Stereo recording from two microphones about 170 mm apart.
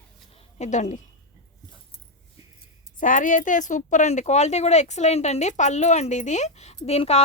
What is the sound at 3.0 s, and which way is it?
A woman's voice, 50° left (ahead or behind).